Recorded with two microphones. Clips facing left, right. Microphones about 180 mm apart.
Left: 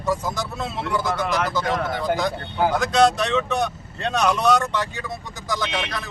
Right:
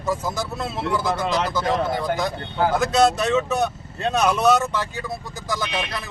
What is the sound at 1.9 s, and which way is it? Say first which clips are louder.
Speech: left 1 dB; centre (ahead or behind).